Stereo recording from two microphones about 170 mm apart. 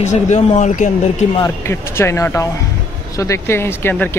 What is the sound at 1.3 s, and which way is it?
Speech, 15° left (ahead or behind).